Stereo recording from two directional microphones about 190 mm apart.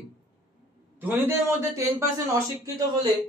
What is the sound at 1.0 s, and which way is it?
A man's voice, 10° right (ahead or behind).